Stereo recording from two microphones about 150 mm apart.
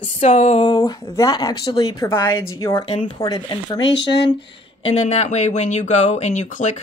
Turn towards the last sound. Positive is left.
turn(degrees=55)  # may be behind; listen again after turning